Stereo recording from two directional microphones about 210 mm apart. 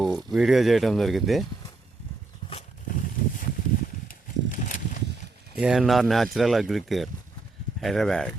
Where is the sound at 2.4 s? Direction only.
20° left (ahead or behind).